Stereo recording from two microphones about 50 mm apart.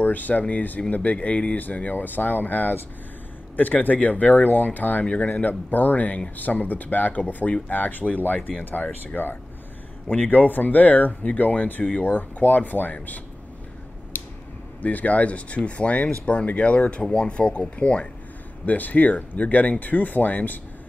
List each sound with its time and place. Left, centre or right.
0.0 s speech: left
14.8 s speech: left